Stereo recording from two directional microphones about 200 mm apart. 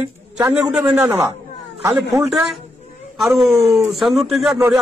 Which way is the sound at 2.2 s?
Centre (ahead or behind).